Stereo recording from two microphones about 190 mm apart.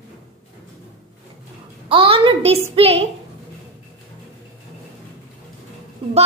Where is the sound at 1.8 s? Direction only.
30° right (ahead or behind).